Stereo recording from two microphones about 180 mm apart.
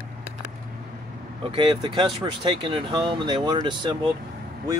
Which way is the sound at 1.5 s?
30° right (ahead or behind).